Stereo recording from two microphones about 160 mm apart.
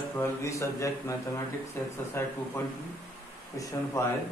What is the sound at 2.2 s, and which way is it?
Speech, 15° left (ahead or behind).